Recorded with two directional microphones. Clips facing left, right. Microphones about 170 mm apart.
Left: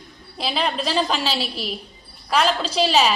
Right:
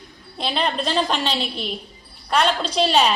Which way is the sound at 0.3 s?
5° left (ahead or behind).